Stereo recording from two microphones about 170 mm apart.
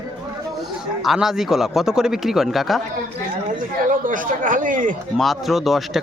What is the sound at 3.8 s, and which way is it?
Speech, 50° right (ahead or behind).